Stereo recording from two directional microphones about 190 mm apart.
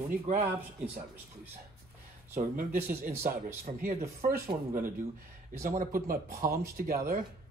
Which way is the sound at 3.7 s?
35° right (ahead or behind).